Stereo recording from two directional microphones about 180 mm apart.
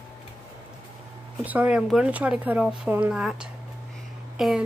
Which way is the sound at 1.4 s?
10° right (ahead or behind).